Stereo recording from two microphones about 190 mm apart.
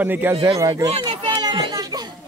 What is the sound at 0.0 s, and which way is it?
Speech, 10° right (ahead or behind).